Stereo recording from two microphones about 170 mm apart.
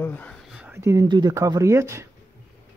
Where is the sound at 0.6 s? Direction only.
15° right (ahead or behind).